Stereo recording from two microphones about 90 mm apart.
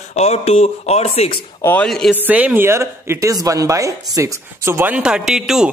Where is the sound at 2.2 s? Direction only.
20° right (ahead or behind).